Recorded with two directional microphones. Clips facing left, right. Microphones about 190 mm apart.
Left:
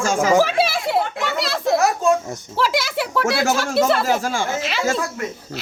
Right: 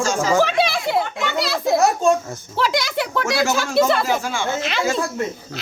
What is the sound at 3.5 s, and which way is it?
Speech, centre (ahead or behind).